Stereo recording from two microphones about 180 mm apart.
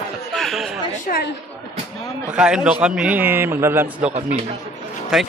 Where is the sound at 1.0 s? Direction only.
60° left (ahead or behind).